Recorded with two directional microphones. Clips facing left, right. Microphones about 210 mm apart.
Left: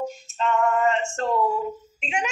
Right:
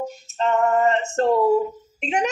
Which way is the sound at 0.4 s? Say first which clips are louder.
Right 3 dB; 35° right (ahead or behind).